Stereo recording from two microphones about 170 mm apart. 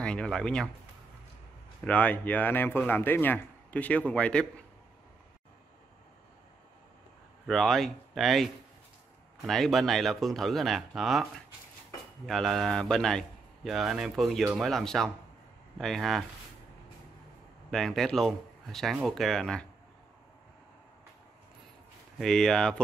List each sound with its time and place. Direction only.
0.0 s speech: 5° left (ahead or behind)
1.9 s a man's voice: 10° left (ahead or behind)
7.4 s speech: centre (ahead or behind)
9.5 s speech: centre (ahead or behind)
12.3 s speech: centre (ahead or behind)
17.6 s speech: centre (ahead or behind)
22.2 s speech: 5° left (ahead or behind)